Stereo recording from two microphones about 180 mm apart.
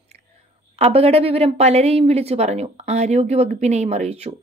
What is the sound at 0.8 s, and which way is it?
Speech, 35° right (ahead or behind).